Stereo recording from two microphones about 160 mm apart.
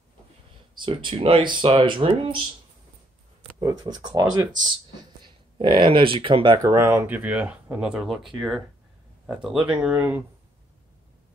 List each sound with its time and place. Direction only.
0.7 s speech: 30° right (ahead or behind)
3.5 s speech: 25° right (ahead or behind); by 10.2 s 10° right (ahead or behind)